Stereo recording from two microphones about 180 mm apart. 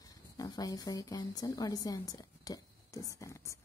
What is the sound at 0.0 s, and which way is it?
Speech, 20° left (ahead or behind).